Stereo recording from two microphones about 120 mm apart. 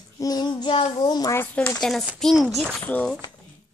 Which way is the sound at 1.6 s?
5° left (ahead or behind).